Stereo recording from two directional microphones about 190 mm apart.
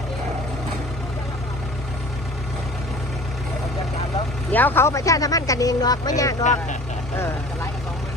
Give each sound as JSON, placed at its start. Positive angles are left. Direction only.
{"t": 4.5, "sound": "speech", "side_deg": 10}
{"t": 6.4, "sound": "speech", "side_deg": 40}